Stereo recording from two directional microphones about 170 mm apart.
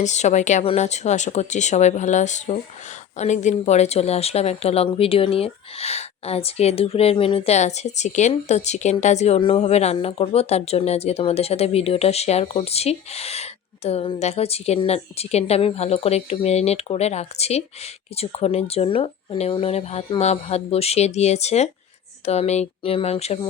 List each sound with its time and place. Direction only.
0.0 s speech: 40° left (ahead or behind)